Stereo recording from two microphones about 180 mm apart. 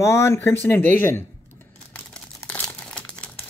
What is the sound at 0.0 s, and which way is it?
Speech, 15° left (ahead or behind).